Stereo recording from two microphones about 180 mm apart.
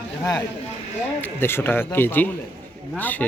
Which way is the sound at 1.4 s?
10° left (ahead or behind).